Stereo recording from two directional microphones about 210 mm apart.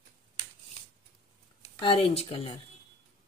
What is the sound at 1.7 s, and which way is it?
Speech, 25° left (ahead or behind).